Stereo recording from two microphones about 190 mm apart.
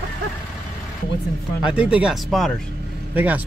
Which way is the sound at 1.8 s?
5° right (ahead or behind).